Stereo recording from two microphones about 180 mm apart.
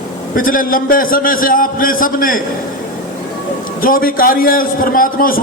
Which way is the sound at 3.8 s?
50° left (ahead or behind).